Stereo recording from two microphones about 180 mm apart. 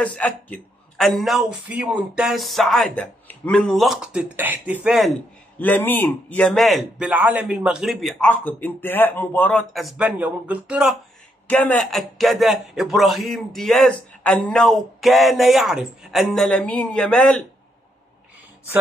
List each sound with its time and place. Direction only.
0.0 s a man's voice: 5° left (ahead or behind)
5.6 s a man's voice: 10° left (ahead or behind)
11.4 s a man's voice: 10° left (ahead or behind)